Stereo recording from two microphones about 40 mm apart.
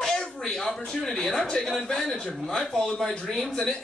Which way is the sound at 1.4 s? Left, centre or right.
Centre.